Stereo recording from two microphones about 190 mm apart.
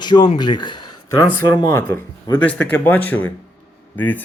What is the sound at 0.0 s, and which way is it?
Speech, 25° left (ahead or behind).